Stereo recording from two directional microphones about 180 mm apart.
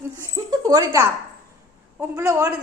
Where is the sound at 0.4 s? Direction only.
20° right (ahead or behind).